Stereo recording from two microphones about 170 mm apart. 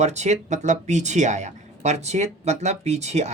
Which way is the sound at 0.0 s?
40° right (ahead or behind).